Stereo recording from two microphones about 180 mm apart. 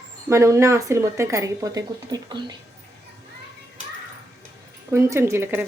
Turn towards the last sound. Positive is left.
turn(degrees=-15)  # may be behind; listen again after turning